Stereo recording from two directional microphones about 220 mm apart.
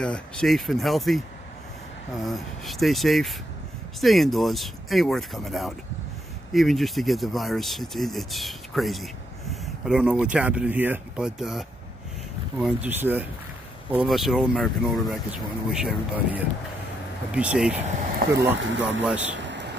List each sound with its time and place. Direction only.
0.0 s speech: 5° left (ahead or behind)
2.2 s speech: centre (ahead or behind)
18.6 s speech: 55° right (ahead or behind)
19.0 s speech: 5° right (ahead or behind)
19.4 s vehicle: 55° right (ahead or behind)